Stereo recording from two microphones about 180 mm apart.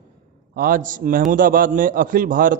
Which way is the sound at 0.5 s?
50° right (ahead or behind).